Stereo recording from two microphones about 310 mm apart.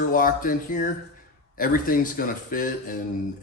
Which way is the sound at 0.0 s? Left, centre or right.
Left.